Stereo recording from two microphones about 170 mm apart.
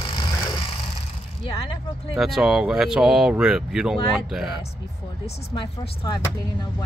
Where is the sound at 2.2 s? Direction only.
Centre (ahead or behind).